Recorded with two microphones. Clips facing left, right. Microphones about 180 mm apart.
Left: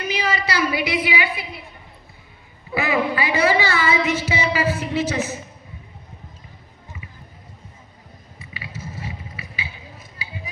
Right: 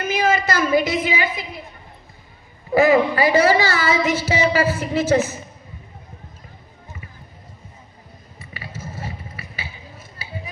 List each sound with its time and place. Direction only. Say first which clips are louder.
0.0 s a woman's voice: right 5 dB; 50° right (ahead or behind)
2.6 s a woman's voice: right 7 dB; 40° right (ahead or behind)
8.4 s a sound: right 1 dB; 45° right (ahead or behind)
10.2 s music: right 1 dB; 45° right (ahead or behind)